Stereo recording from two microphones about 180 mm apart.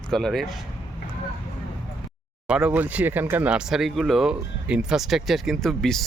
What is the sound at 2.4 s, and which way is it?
Speech, 5° right (ahead or behind).